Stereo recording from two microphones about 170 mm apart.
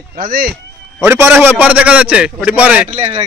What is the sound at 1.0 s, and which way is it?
Speech, 10° right (ahead or behind).